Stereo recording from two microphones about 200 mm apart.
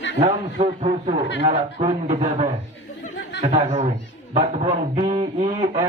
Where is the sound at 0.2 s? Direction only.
35° right (ahead or behind).